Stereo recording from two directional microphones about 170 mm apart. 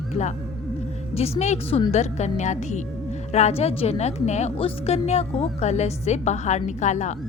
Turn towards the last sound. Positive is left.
turn(degrees=45)  # may be behind; listen again after turning